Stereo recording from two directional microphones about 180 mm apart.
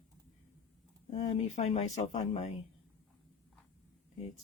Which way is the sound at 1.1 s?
35° left (ahead or behind).